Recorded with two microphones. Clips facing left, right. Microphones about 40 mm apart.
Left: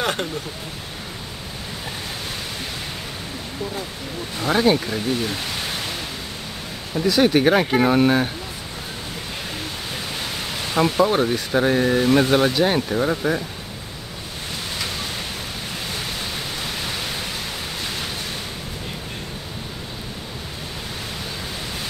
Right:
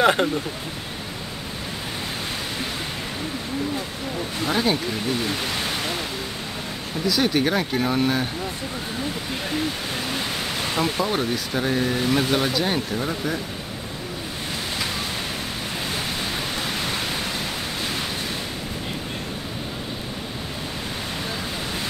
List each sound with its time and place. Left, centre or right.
0.0 s speech: centre
4.5 s speech: centre
7.1 s speech: centre
10.7 s speech: centre